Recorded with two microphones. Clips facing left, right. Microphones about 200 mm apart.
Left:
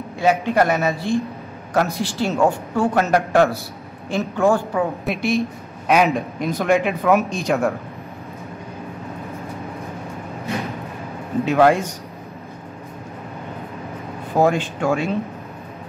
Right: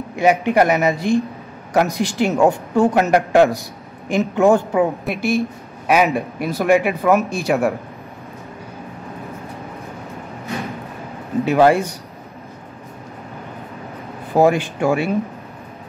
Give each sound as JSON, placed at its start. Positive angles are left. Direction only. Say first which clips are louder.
{"t": 0.2, "sound": "a woman's voice", "louder": "right 3 dB", "side_deg": -15}
{"t": 5.0, "sound": "a woman's voice", "louder": "right 1 dB", "side_deg": 0}
{"t": 11.4, "sound": "speech", "louder": "right 2 dB", "side_deg": -5}
{"t": 14.3, "sound": "a woman's voice", "louder": "right 3 dB", "side_deg": -10}